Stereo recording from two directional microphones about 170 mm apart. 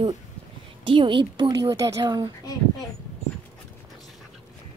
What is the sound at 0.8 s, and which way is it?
Speech, 30° right (ahead or behind).